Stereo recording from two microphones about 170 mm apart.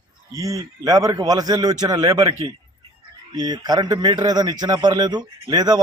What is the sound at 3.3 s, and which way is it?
A man's voice, 25° right (ahead or behind).